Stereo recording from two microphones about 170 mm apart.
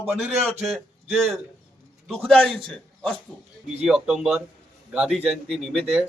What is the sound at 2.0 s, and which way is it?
A man's voice, centre (ahead or behind).